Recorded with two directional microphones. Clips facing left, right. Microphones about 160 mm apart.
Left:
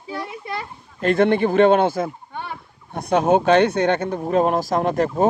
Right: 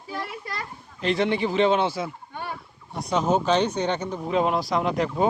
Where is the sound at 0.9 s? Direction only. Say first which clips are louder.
Left 6 dB; 50° left (ahead or behind).